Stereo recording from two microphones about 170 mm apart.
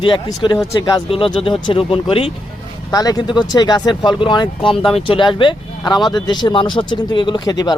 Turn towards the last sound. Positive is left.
turn(degrees=25)  # may be behind; listen again after turning